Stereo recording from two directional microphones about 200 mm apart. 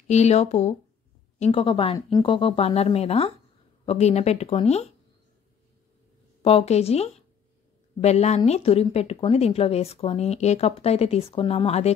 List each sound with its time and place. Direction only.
0.1 s speech: 35° left (ahead or behind)
6.4 s speech: 30° left (ahead or behind)